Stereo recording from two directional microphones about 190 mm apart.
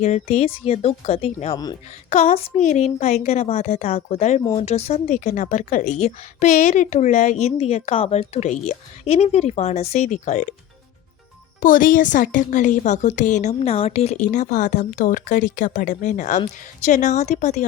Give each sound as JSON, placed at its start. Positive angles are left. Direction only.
{"t": 0.0, "sound": "speech", "side_deg": 35}
{"t": 11.6, "sound": "speech", "side_deg": 45}